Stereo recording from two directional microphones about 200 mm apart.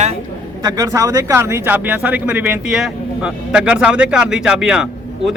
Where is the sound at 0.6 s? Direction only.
20° right (ahead or behind).